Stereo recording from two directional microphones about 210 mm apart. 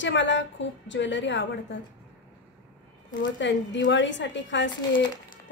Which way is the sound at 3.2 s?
60° left (ahead or behind).